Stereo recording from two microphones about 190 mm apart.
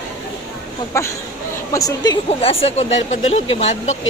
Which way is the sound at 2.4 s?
30° left (ahead or behind).